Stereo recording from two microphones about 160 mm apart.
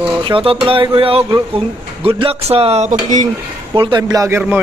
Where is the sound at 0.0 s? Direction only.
30° right (ahead or behind); by 3.3 s 50° right (ahead or behind).